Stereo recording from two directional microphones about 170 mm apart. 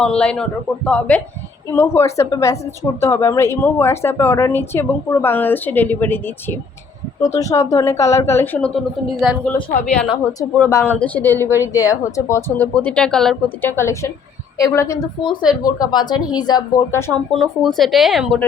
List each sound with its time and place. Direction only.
0.0 s a woman's voice: 5° left (ahead or behind)
10.6 s a woman's voice: 15° left (ahead or behind)
17.1 s speech: centre (ahead or behind)